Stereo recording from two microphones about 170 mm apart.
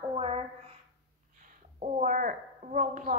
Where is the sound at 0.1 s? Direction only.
35° right (ahead or behind).